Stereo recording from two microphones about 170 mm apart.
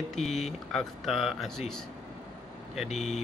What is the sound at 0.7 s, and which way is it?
Speech, centre (ahead or behind).